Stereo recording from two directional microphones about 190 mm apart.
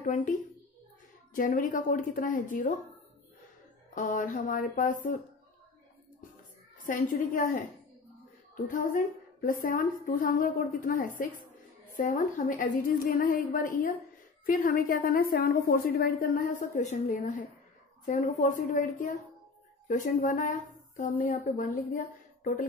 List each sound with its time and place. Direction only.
0.0 s a woman's voice: 40° left (ahead or behind)
1.3 s a woman's voice: 45° left (ahead or behind)
3.9 s a woman's voice: 40° left (ahead or behind)
6.8 s a woman's voice: 45° left (ahead or behind)
8.6 s a woman's voice: 45° left (ahead or behind)